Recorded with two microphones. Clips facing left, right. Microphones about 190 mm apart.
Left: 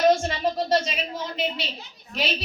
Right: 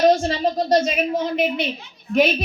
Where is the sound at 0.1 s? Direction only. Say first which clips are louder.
Right 3 dB; 35° right (ahead or behind).